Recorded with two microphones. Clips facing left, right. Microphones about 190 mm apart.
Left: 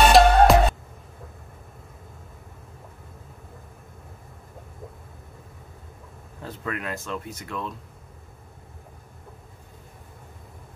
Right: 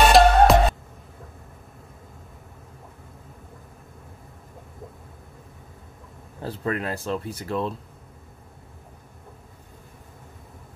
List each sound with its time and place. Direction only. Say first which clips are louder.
0.1 s music: even; centre (ahead or behind)
6.4 s speech: right 5 dB; 35° right (ahead or behind)